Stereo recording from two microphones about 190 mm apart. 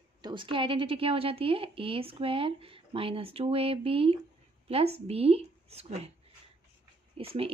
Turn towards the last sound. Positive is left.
turn(degrees=-30)  # may be behind; listen again after turning